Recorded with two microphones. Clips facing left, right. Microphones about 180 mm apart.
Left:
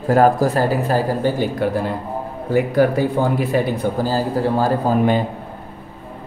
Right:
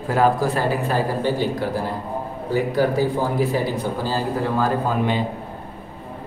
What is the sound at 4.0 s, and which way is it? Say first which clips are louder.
A man's voice: left 5 dB; 35° left (ahead or behind).